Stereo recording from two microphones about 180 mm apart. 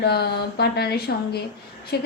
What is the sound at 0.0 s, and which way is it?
A woman's voice, 65° left (ahead or behind).